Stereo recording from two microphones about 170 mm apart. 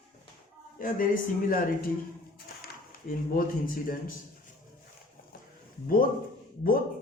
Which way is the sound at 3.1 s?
55° left (ahead or behind).